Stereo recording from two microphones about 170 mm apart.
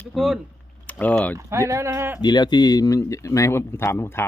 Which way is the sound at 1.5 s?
15° right (ahead or behind).